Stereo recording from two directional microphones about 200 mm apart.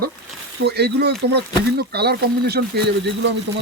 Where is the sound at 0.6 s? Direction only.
55° right (ahead or behind).